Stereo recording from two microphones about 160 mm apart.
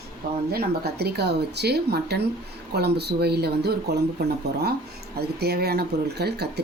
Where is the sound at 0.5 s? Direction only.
90° right.